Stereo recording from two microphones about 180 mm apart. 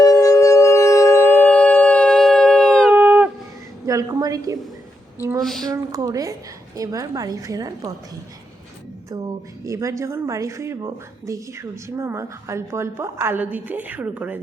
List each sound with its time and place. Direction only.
0.0 s a sound: 20° left (ahead or behind)
2.9 s a sound: 10° right (ahead or behind)
3.8 s a woman's voice: 20° right (ahead or behind)
5.4 s speech: centre (ahead or behind)
5.7 s a woman's voice: 20° right (ahead or behind)
9.6 s speech: 15° right (ahead or behind)